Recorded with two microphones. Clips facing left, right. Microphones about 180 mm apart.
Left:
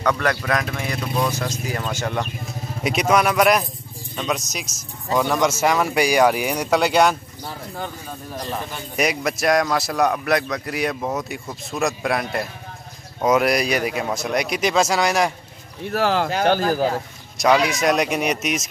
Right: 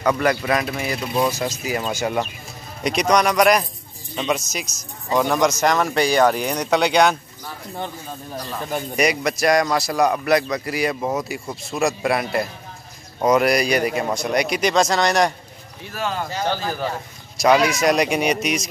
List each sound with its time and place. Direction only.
0.0 s speech: 5° right (ahead or behind)
2.8 s speech: 5° left (ahead or behind)
8.9 s speech: centre (ahead or behind)
15.9 s speech: 70° left (ahead or behind); by 16.8 s 50° left (ahead or behind)
17.4 s speech: centre (ahead or behind)